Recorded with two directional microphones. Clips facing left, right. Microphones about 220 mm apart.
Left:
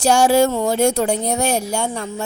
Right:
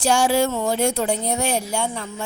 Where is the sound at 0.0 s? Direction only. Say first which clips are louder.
Left 4 dB; 40° left (ahead or behind).